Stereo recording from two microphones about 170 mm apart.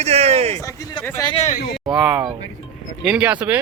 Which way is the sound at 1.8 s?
5° right (ahead or behind).